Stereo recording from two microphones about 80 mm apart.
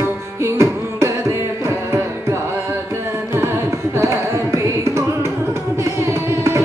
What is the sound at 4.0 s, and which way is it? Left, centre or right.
Carnatic music, right.